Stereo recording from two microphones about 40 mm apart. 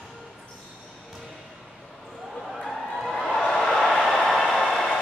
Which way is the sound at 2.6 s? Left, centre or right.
Centre.